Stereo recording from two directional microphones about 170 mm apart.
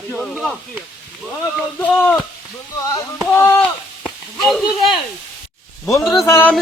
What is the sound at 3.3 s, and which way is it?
Speech, 10° left (ahead or behind).